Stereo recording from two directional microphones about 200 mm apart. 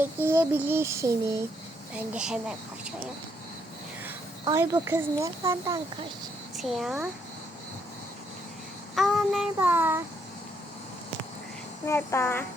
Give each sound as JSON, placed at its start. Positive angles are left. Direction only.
{"t": 0.3, "sound": "speech", "side_deg": -10}
{"t": 2.0, "sound": "child singing", "side_deg": -5}
{"t": 4.4, "sound": "speech", "side_deg": -15}
{"t": 6.6, "sound": "child singing", "side_deg": 0}
{"t": 9.0, "sound": "child singing", "side_deg": 0}
{"t": 11.9, "sound": "a child's voice", "side_deg": 10}